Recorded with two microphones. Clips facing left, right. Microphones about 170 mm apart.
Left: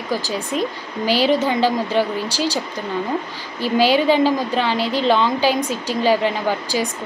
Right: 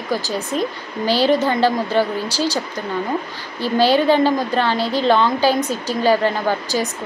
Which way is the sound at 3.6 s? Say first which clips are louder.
Right 1 dB; 10° left (ahead or behind).